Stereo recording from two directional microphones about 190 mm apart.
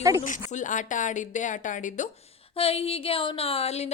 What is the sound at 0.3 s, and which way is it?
Speech, 45° left (ahead or behind).